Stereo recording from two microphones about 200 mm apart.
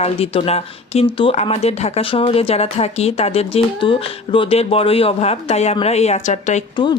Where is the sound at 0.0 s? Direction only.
30° left (ahead or behind).